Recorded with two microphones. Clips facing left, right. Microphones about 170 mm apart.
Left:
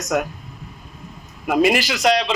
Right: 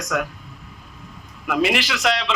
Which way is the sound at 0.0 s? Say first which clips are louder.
Left 3 dB; 45° left (ahead or behind).